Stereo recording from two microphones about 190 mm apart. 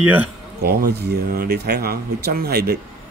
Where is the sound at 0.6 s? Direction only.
55° right (ahead or behind).